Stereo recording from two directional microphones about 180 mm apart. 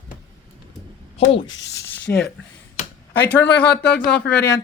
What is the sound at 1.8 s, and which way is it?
Speech, 65° left (ahead or behind).